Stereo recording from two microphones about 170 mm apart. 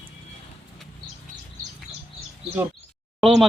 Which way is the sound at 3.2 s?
Centre (ahead or behind).